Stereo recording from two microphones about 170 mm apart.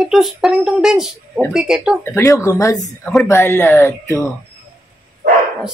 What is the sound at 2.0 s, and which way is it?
Speech, 15° left (ahead or behind).